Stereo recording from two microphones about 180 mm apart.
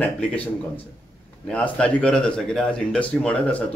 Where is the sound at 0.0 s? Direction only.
5° left (ahead or behind).